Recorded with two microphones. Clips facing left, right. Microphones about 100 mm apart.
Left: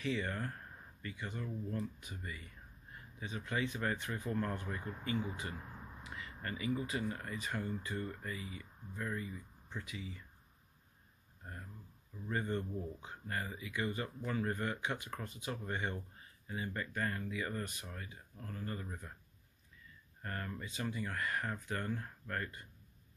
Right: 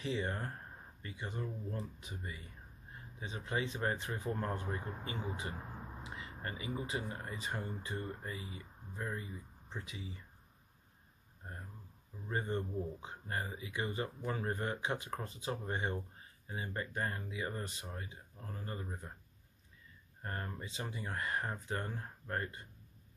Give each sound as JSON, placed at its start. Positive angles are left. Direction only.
{"t": 0.0, "sound": "speech", "side_deg": -25}
{"t": 12.3, "sound": "speech", "side_deg": -30}
{"t": 20.2, "sound": "speech", "side_deg": -25}